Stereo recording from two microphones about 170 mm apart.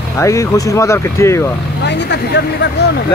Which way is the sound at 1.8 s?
90° left.